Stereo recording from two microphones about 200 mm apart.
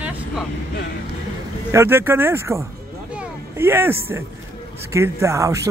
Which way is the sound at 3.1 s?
10° right (ahead or behind).